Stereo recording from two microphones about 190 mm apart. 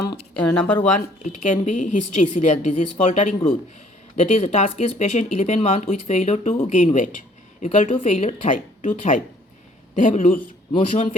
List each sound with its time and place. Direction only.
0.5 s speech: 5° left (ahead or behind)
0.9 s speech: 40° left (ahead or behind)
10.7 s speech: 30° left (ahead or behind)